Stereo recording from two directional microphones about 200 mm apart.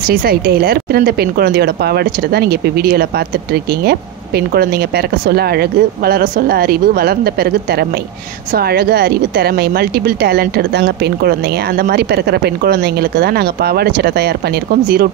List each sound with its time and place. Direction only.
0.1 s speech: 50° right (ahead or behind)
4.6 s speech: 50° right (ahead or behind)
8.5 s speech: 50° right (ahead or behind)